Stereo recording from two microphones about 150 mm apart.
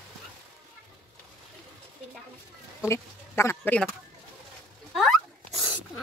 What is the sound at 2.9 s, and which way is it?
Speech, 15° left (ahead or behind).